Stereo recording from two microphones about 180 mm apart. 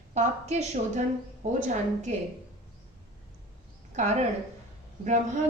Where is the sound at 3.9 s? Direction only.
40° right (ahead or behind).